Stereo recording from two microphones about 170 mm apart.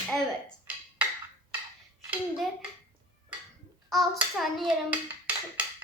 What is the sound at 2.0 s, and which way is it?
Speech, 10° right (ahead or behind).